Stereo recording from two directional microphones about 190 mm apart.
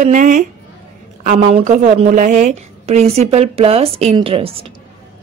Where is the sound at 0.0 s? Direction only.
40° right (ahead or behind).